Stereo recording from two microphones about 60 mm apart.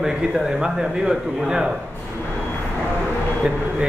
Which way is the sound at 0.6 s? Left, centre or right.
Centre.